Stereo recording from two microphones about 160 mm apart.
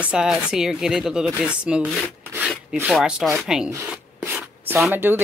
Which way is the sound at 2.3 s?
5° right (ahead or behind).